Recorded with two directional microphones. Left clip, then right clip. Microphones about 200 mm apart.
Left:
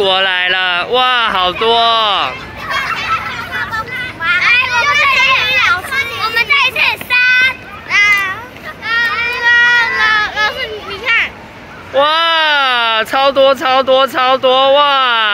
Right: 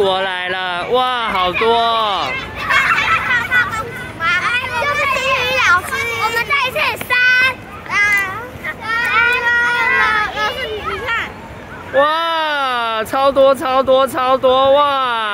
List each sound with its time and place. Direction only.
0.0 s speech: 10° right (ahead or behind)
3.5 s a sound: 70° right (ahead or behind); by 5.4 s 40° right (ahead or behind)
6.2 s children playing: 50° right (ahead or behind)
8.8 s a sound: 45° right (ahead or behind)
10.0 s children playing: 60° right (ahead or behind)
11.9 s speech: 10° right (ahead or behind)